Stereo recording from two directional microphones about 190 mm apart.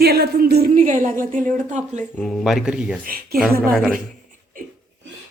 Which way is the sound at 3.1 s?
50° right (ahead or behind).